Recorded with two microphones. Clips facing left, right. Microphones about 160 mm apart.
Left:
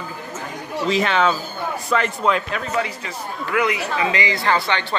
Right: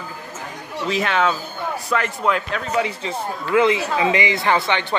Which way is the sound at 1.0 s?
5° right (ahead or behind).